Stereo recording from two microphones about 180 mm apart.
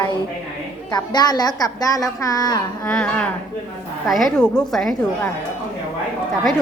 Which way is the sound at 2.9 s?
5° left (ahead or behind).